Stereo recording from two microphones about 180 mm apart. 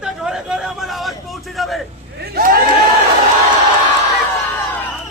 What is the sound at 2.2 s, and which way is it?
Crowd, 55° right (ahead or behind).